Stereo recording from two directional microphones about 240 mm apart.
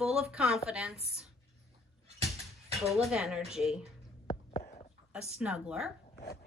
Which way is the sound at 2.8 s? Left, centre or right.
Centre.